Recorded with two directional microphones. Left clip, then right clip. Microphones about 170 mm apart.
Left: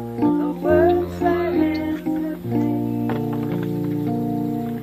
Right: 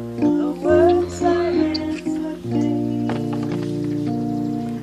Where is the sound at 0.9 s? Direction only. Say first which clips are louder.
Right 2 dB; 40° right (ahead or behind).